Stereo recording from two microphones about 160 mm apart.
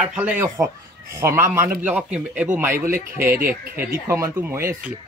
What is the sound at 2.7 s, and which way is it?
Speech, 60° right (ahead or behind).